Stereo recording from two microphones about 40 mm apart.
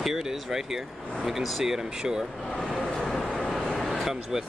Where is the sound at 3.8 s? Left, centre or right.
Centre.